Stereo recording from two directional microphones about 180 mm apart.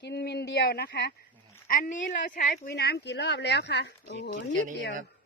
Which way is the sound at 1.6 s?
50° left (ahead or behind).